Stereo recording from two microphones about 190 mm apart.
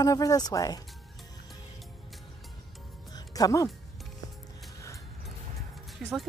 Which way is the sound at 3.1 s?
20° left (ahead or behind).